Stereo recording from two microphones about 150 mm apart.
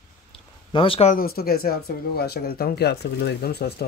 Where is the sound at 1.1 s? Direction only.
85° left.